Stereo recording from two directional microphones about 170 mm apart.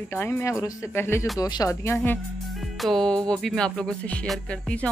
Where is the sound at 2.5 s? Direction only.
Centre (ahead or behind).